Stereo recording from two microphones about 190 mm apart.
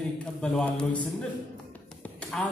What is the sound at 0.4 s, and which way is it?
Speech, 5° left (ahead or behind).